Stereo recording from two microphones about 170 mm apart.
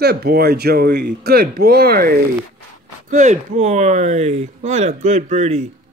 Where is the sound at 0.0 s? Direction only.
70° right (ahead or behind).